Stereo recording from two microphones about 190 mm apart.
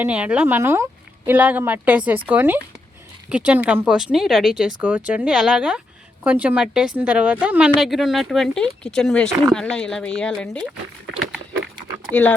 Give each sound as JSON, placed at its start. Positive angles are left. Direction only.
{"t": 0.0, "sound": "a woman's voice", "side_deg": -5}